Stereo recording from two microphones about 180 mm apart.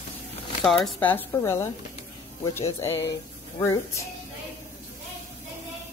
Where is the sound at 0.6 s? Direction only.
Centre (ahead or behind).